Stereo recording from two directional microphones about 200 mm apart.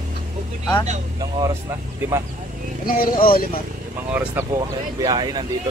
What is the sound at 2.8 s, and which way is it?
Speech, 45° left (ahead or behind).